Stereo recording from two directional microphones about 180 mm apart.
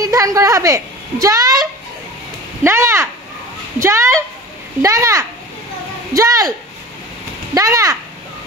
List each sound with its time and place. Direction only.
0.0 s a woman's voice: 20° right (ahead or behind)
7.5 s a woman's voice: 20° right (ahead or behind)